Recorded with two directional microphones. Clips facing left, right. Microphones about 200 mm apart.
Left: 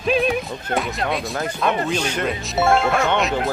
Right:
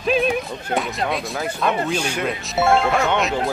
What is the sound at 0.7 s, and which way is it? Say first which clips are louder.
Speech: even; centre (ahead or behind).